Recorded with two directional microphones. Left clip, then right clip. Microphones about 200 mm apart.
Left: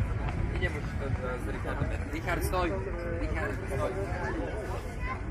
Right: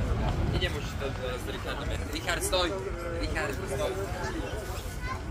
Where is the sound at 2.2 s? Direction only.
50° right (ahead or behind).